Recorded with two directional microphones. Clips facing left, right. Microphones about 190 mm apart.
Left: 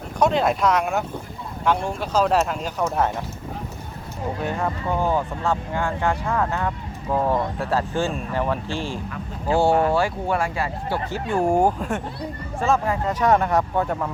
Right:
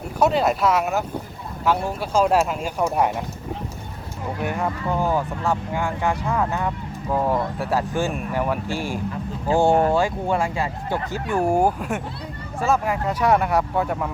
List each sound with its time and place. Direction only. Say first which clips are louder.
0.2 s speech: even; 5° right (ahead or behind)
4.4 s speech: right 2 dB; 15° right (ahead or behind)
10.0 s speech: right 1 dB; 20° right (ahead or behind)
11.1 s speech: left 1 dB; 15° left (ahead or behind)
11.5 s speech: even; 5° right (ahead or behind)